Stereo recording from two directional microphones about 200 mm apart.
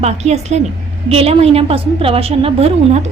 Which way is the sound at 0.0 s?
35° right (ahead or behind).